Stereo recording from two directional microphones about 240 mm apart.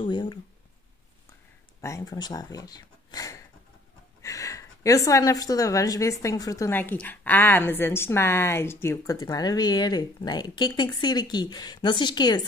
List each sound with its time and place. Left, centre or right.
0.0 s speech: centre
1.8 s a woman's voice: centre